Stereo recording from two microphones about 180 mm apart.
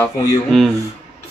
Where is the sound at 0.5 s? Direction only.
Centre (ahead or behind).